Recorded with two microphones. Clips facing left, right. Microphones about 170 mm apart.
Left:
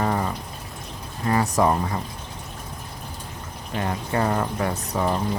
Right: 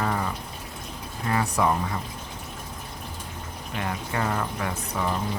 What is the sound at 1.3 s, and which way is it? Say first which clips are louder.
Speech: left 4 dB; 40° left (ahead or behind).